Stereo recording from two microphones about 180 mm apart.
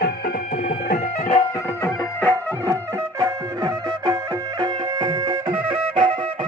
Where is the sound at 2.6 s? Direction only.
20° right (ahead or behind).